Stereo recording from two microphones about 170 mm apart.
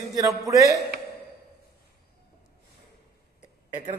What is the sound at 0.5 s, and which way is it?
Speech, 20° right (ahead or behind).